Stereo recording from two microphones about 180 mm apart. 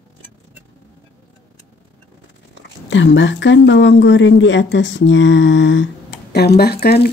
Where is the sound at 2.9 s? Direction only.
90° left.